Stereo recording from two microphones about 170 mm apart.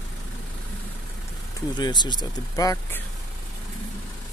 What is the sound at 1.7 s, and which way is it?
Speech, 25° left (ahead or behind).